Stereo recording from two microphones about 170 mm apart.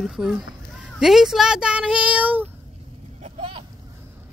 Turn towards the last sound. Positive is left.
turn(degrees=-35)  # may be behind; listen again after turning